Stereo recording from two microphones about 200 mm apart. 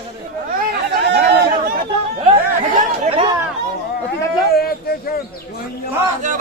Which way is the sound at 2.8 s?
30° right (ahead or behind).